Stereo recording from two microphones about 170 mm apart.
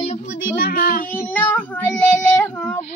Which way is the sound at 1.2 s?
10° left (ahead or behind).